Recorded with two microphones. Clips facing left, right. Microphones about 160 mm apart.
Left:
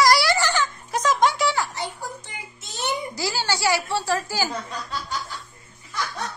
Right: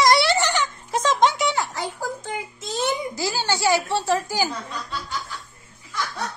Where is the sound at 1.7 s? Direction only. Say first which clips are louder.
Right 3 dB; 90° right.